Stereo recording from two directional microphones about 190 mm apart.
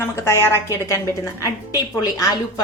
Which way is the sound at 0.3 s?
15° left (ahead or behind).